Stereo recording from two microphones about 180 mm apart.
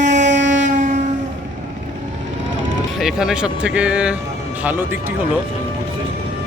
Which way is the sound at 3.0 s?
5° right (ahead or behind).